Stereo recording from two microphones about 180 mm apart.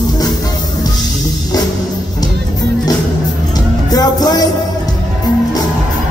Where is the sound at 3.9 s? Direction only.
20° left (ahead or behind).